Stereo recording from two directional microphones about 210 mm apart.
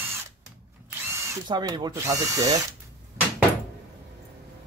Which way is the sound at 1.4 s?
20° right (ahead or behind).